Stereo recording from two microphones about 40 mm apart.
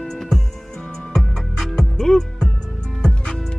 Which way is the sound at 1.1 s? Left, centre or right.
Centre.